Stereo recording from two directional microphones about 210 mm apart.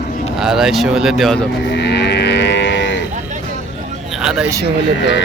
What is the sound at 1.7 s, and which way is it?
Livestock, 55° left (ahead or behind).